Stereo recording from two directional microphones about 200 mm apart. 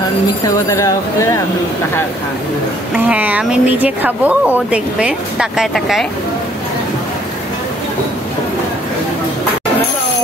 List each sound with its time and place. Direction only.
0.7 s speech: 15° left (ahead or behind)
2.9 s speech: 5° right (ahead or behind)